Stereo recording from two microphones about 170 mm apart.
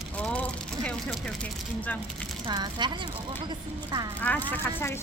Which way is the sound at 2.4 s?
25° right (ahead or behind).